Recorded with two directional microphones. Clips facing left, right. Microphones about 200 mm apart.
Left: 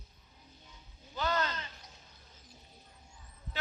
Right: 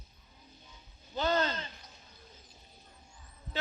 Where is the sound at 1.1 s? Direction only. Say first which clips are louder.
Right 4 dB; 25° right (ahead or behind).